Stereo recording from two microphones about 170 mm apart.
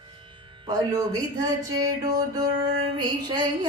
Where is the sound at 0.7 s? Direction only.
20° right (ahead or behind).